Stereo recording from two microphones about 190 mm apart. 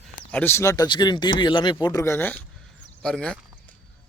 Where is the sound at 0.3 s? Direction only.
10° left (ahead or behind).